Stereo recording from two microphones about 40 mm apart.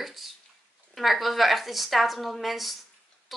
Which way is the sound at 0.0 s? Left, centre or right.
Centre.